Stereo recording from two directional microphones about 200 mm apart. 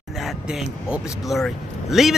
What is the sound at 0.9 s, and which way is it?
Speech, centre (ahead or behind).